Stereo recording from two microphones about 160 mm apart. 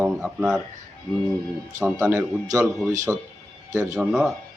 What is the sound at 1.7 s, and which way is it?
Speech, 15° right (ahead or behind).